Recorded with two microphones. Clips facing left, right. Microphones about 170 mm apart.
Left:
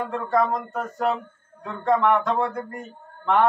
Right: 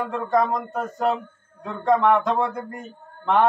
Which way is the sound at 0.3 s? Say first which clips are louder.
Right 1 dB; 20° right (ahead or behind).